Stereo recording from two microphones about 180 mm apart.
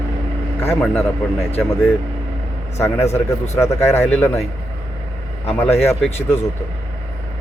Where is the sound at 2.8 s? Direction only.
15° left (ahead or behind).